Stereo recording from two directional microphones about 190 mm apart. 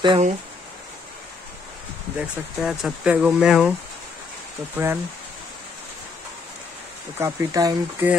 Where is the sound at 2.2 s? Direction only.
5° right (ahead or behind).